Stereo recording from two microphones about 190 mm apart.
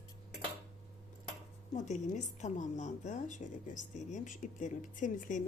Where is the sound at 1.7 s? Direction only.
40° left (ahead or behind).